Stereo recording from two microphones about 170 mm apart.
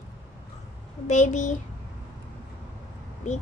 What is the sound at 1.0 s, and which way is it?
Speech, 45° left (ahead or behind).